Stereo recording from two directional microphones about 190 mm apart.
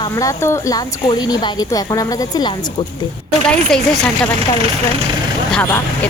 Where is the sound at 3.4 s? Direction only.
5° left (ahead or behind).